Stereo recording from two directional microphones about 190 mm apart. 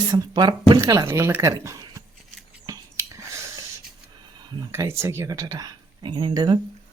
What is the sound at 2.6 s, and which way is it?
Whispering, 15° right (ahead or behind).